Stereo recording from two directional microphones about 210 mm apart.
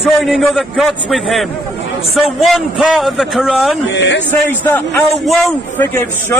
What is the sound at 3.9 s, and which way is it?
Speech, 60° left (ahead or behind).